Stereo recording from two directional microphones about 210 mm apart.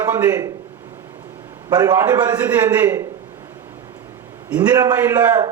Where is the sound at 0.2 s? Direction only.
10° right (ahead or behind).